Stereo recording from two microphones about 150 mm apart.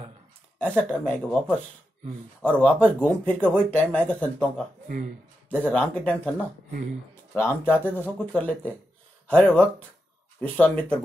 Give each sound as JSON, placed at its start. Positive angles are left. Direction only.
{"t": 0.6, "sound": "speech", "side_deg": 10}
{"t": 4.8, "sound": "speech", "side_deg": -60}
{"t": 5.5, "sound": "speech", "side_deg": 10}